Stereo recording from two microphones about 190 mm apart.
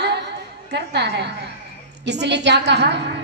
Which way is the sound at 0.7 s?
60° right (ahead or behind).